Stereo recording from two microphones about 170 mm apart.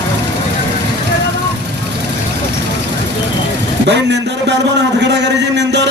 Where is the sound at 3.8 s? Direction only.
90° right.